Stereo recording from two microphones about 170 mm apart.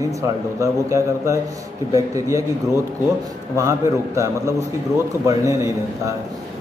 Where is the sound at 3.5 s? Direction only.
15° right (ahead or behind).